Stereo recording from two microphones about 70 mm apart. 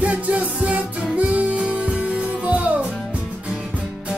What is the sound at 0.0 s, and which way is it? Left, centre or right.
Music, centre.